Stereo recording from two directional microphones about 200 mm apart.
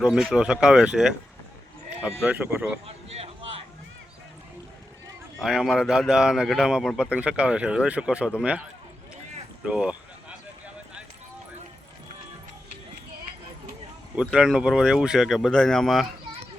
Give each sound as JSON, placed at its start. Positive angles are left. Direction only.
{"t": 0.0, "sound": "a man's voice", "side_deg": 0}
{"t": 2.8, "sound": "speech", "side_deg": -30}
{"t": 5.4, "sound": "a man's voice", "side_deg": 0}
{"t": 9.6, "sound": "a sound", "side_deg": -5}
{"t": 14.2, "sound": "a man's voice", "side_deg": -5}